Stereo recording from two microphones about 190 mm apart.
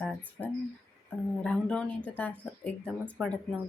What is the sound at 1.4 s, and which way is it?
A woman's voice, 5° left (ahead or behind).